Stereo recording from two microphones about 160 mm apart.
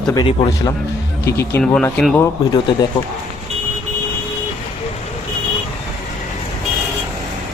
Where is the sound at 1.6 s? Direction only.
5° left (ahead or behind).